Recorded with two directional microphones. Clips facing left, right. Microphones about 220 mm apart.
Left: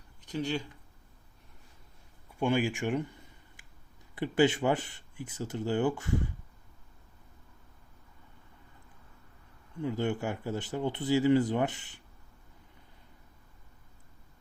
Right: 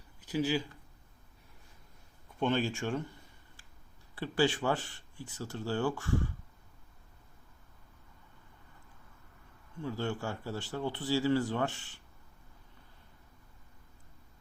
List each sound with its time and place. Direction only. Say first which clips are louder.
0.2 s speech: right 2 dB; 5° right (ahead or behind)
2.4 s speech: left 2 dB; 10° left (ahead or behind)
4.1 s speech: left 4 dB; 20° left (ahead or behind)
9.8 s speech: left 4 dB; 20° left (ahead or behind)